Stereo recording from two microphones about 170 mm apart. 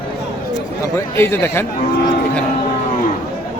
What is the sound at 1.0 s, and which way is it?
Speech, 15° left (ahead or behind).